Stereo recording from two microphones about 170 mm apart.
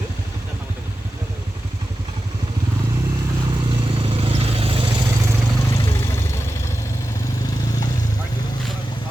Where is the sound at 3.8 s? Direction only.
35° right (ahead or behind).